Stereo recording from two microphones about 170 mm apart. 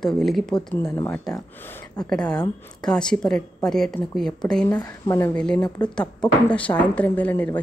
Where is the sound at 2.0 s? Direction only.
5° left (ahead or behind).